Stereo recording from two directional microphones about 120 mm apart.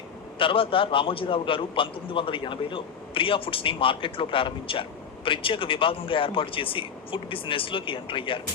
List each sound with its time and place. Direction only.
0.3 s a man's voice: 45° left (ahead or behind)